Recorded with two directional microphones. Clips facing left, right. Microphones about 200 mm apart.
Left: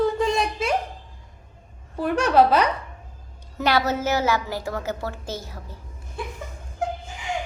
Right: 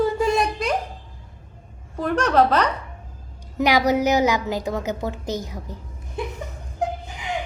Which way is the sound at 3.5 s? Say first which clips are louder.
Right 4 dB; 15° right (ahead or behind).